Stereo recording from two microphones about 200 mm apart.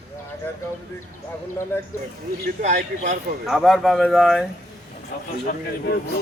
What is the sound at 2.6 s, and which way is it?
Speech, 35° right (ahead or behind).